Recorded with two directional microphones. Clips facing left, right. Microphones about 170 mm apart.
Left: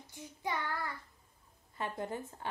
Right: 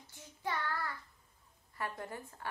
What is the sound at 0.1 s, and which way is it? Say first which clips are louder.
Child singing: left 1 dB; 15° left (ahead or behind).